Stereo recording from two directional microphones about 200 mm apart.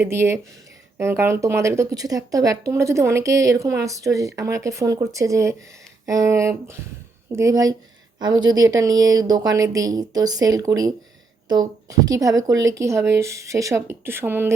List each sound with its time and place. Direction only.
0.0 s speech: 15° right (ahead or behind)